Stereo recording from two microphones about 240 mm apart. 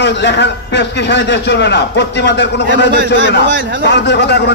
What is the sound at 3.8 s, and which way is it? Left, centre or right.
Speech, left.